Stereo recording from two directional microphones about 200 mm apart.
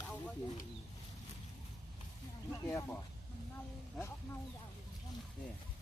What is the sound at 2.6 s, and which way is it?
Speech, 10° left (ahead or behind).